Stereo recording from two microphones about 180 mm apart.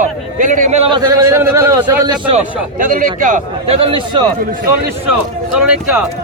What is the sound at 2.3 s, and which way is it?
A man's voice, 50° right (ahead or behind).